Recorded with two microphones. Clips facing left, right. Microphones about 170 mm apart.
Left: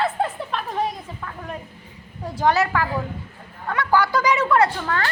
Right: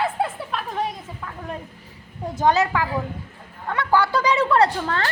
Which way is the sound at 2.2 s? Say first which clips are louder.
Right 1 dB; 20° right (ahead or behind).